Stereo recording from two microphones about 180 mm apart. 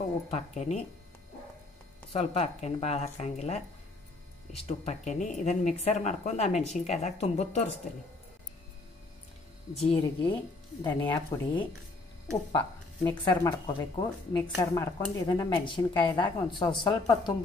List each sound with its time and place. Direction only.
0.3 s speech: 40° left (ahead or behind)
2.1 s speech: 35° left (ahead or behind)
9.8 s a woman's voice: 35° left (ahead or behind)
11.1 s speech: 10° left (ahead or behind)
13.4 s a woman's voice: 20° left (ahead or behind)